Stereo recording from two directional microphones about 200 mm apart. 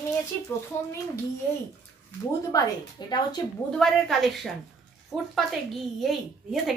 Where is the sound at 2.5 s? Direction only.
15° left (ahead or behind).